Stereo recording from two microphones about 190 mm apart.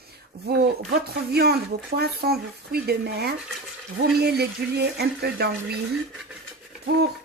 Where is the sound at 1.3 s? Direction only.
55° right (ahead or behind).